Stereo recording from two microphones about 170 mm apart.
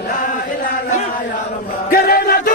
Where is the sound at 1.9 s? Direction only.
60° left (ahead or behind).